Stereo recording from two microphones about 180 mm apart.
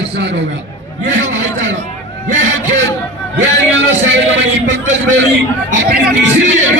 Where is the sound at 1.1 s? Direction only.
85° right.